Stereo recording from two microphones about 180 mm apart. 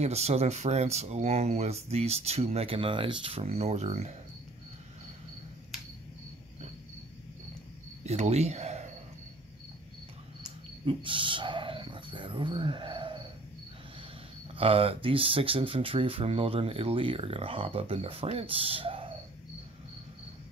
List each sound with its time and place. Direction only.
0.0 s speech: 35° right (ahead or behind)
8.0 s speech: 40° right (ahead or behind)
10.9 s speech: 30° right (ahead or behind)
14.5 s speech: 30° right (ahead or behind)